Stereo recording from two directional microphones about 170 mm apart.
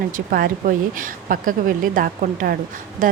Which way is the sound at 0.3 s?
55° right (ahead or behind).